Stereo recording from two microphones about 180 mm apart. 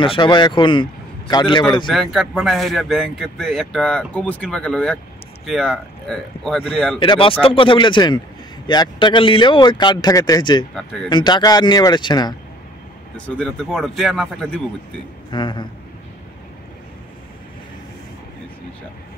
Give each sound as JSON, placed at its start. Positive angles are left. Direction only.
{"t": 0.0, "sound": "speech", "side_deg": 30}
{"t": 1.9, "sound": "speech", "side_deg": 0}
{"t": 7.0, "sound": "speech", "side_deg": 30}
{"t": 10.7, "sound": "speech", "side_deg": 0}
{"t": 11.1, "sound": "speech", "side_deg": 25}
{"t": 13.4, "sound": "speech", "side_deg": 0}
{"t": 15.3, "sound": "speech", "side_deg": 25}